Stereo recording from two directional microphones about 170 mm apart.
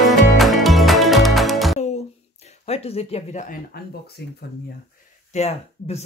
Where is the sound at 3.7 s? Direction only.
70° left (ahead or behind).